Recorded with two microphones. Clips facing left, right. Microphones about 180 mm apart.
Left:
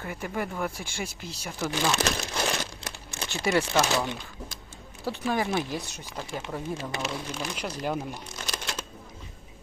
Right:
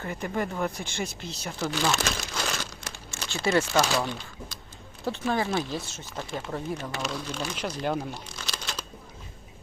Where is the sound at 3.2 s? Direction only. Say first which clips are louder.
Right 1 dB; 15° left (ahead or behind).